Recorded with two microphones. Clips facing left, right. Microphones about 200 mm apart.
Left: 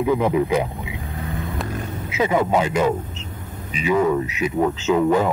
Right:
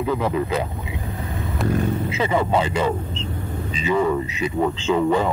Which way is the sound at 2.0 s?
10° left (ahead or behind).